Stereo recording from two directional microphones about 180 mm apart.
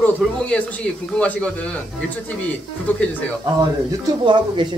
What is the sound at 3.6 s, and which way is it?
Speech, 25° right (ahead or behind).